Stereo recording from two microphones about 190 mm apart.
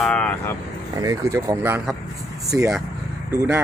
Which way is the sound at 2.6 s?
5° right (ahead or behind).